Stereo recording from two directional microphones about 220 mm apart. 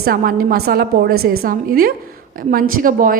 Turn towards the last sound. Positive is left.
turn(degrees=-40)  # may be behind; listen again after turning